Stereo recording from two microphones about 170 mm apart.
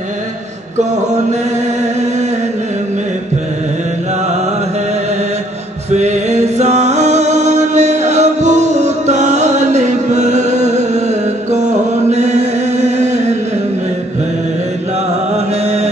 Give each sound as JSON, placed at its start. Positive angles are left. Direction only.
{"t": 5.9, "sound": "music", "side_deg": -40}
{"t": 15.3, "sound": "music", "side_deg": -40}